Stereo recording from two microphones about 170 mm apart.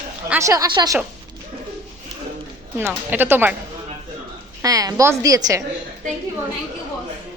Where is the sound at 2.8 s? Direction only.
10° right (ahead or behind).